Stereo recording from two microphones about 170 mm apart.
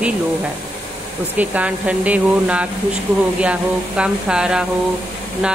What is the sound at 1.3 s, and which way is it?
Speech, 10° right (ahead or behind).